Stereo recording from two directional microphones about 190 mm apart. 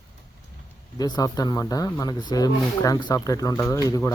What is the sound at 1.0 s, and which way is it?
Speech, 20° left (ahead or behind).